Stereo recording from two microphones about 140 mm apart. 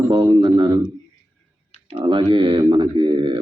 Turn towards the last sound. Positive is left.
turn(degrees=-35)  # may be behind; listen again after turning